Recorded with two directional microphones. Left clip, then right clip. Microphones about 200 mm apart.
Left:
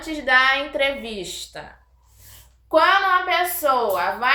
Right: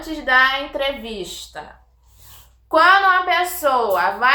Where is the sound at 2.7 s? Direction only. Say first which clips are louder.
Right 3 dB; 5° right (ahead or behind).